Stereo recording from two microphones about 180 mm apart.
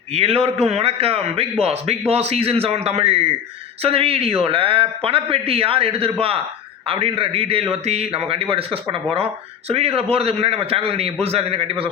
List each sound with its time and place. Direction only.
0.1 s a man's voice: 35° right (ahead or behind)